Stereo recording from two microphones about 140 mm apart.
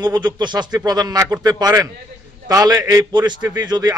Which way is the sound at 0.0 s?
30° right (ahead or behind).